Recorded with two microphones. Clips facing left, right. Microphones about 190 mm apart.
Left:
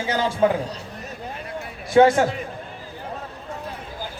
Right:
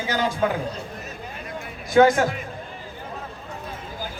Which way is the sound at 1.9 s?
30° left (ahead or behind).